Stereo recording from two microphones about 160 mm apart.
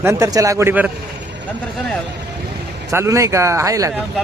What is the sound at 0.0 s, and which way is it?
Speech, 15° right (ahead or behind).